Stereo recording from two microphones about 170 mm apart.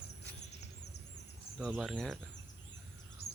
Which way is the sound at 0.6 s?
85° left.